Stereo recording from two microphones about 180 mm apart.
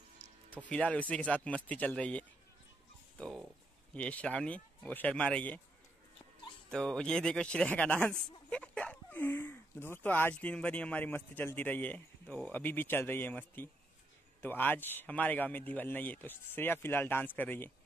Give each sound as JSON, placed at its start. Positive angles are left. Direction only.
{"t": 0.6, "sound": "speech", "side_deg": 5}
{"t": 6.7, "sound": "speech", "side_deg": 5}